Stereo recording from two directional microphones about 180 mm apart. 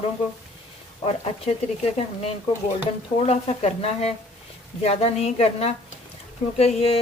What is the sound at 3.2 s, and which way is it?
Speech, 35° left (ahead or behind).